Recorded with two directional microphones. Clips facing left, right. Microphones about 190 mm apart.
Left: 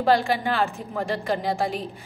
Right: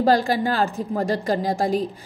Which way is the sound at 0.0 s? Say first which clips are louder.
Right 2 dB; 40° right (ahead or behind).